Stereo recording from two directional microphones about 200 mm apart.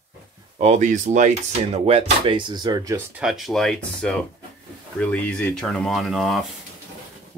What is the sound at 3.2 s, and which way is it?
Speech, centre (ahead or behind).